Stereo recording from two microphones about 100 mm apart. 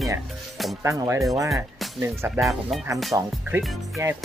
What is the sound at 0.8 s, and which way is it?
Speech, 30° right (ahead or behind).